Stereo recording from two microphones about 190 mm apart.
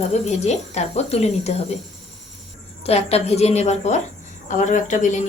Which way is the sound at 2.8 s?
30° left (ahead or behind).